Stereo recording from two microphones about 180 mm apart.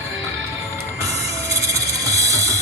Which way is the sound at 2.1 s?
20° right (ahead or behind).